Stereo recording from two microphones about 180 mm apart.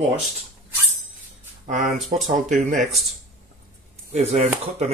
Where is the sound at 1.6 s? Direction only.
45° right (ahead or behind).